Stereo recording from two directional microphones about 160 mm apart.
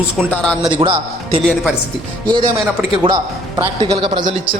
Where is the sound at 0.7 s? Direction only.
30° right (ahead or behind).